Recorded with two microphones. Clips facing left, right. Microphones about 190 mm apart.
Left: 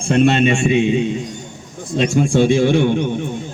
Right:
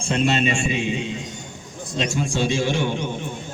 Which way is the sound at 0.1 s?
55° left (ahead or behind).